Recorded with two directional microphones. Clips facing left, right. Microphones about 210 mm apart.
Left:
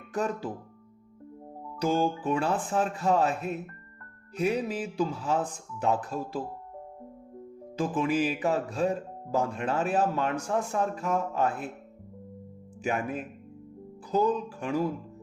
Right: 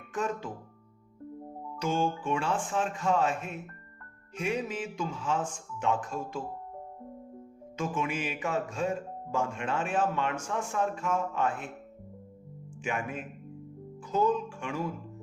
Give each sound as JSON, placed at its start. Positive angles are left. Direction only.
{"t": 0.1, "sound": "speech", "side_deg": 35}
{"t": 1.8, "sound": "speech", "side_deg": 35}
{"t": 7.8, "sound": "speech", "side_deg": 35}
{"t": 12.8, "sound": "speech", "side_deg": 35}